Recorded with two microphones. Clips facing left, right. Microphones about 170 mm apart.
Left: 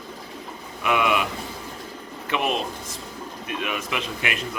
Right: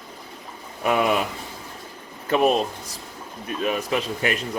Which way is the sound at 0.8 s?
35° right (ahead or behind).